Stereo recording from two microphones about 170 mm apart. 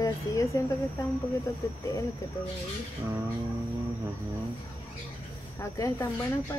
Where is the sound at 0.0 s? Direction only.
20° left (ahead or behind).